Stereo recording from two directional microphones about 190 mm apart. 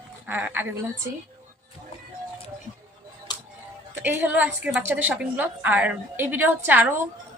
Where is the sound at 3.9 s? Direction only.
10° right (ahead or behind).